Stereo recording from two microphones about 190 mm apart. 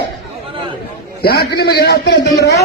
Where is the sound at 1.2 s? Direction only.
55° left (ahead or behind).